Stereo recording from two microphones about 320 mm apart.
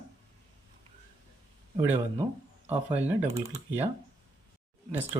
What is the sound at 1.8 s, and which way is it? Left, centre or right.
Speech, centre.